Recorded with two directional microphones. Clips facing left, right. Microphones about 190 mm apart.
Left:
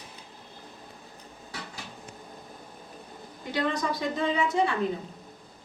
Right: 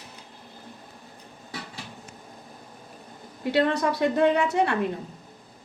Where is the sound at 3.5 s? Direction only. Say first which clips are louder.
Right 6 dB; 65° right (ahead or behind).